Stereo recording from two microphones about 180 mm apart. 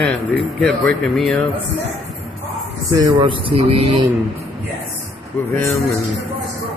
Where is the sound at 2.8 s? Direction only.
25° right (ahead or behind).